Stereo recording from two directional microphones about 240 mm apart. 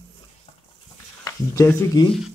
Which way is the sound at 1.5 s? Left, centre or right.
Centre.